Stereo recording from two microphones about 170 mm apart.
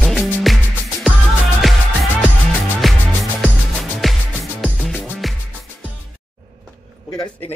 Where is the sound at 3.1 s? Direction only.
5° left (ahead or behind).